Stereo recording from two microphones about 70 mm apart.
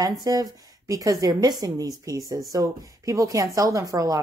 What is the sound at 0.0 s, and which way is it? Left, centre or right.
A woman's voice, right.